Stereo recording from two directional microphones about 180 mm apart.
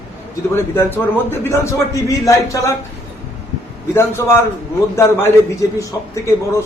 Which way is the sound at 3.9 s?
15° left (ahead or behind).